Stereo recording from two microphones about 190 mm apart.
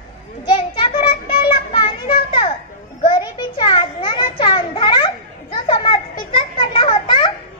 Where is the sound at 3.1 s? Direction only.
25° left (ahead or behind).